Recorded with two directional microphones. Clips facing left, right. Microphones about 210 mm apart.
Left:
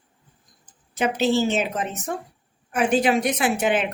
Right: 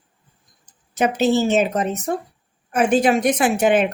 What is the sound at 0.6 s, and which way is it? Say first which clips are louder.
A woman's voice: right 4 dB; 45° right (ahead or behind).